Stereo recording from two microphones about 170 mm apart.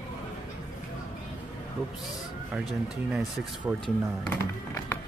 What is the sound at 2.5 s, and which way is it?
Speech, 5° right (ahead or behind).